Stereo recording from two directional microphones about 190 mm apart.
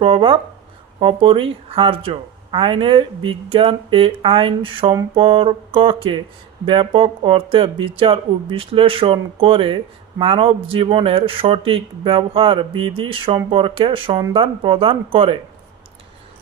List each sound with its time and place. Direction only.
0.0 s speech: 25° right (ahead or behind)